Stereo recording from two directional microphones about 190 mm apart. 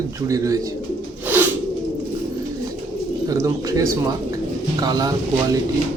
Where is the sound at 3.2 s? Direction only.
15° right (ahead or behind).